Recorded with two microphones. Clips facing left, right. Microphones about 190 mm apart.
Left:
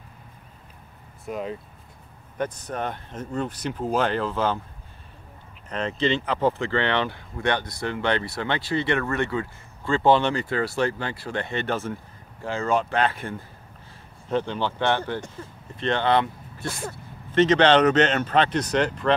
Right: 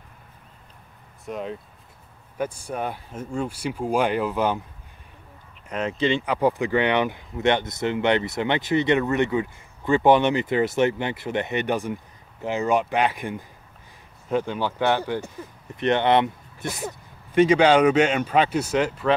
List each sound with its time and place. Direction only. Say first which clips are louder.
1.2 s speech: even; centre (ahead or behind)
5.7 s speech: right 1 dB; 10° right (ahead or behind)